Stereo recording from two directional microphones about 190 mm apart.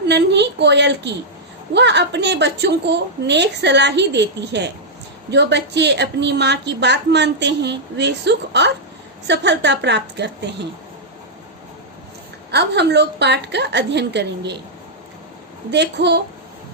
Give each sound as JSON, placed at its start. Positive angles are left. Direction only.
{"t": 0.1, "sound": "a woman's voice", "side_deg": -65}
{"t": 12.5, "sound": "a woman's voice", "side_deg": -60}
{"t": 15.7, "sound": "a woman's voice", "side_deg": -65}